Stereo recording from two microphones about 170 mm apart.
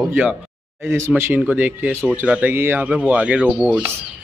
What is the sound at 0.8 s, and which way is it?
Speech, 15° right (ahead or behind).